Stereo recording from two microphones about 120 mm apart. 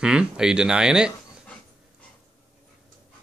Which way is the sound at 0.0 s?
5° right (ahead or behind).